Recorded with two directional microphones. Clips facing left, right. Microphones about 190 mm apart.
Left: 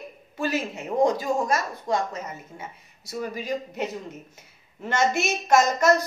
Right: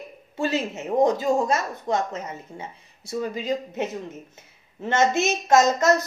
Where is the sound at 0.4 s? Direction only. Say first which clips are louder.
Right 2 dB; 25° right (ahead or behind).